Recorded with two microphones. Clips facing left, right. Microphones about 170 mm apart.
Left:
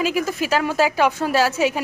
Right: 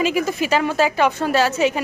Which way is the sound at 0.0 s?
Centre (ahead or behind).